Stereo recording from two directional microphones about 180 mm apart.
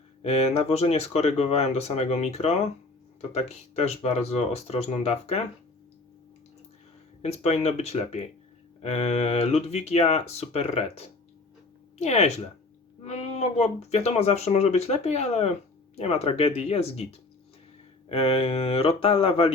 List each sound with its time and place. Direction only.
0.2 s speech: 35° left (ahead or behind)
7.2 s speech: 35° left (ahead or behind)